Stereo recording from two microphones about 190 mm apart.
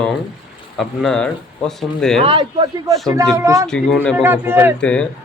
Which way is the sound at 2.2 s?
25° right (ahead or behind).